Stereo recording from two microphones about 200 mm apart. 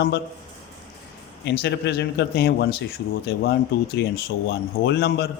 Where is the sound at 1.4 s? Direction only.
55° left (ahead or behind).